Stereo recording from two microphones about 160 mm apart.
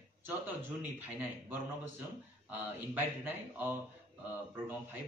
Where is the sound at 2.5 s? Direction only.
10° right (ahead or behind).